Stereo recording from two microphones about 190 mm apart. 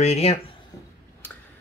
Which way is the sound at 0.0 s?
35° left (ahead or behind).